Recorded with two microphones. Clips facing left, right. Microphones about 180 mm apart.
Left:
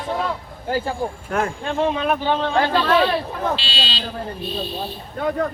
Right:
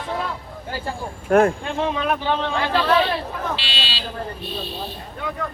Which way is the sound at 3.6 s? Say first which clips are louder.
Left 2 dB; 30° left (ahead or behind).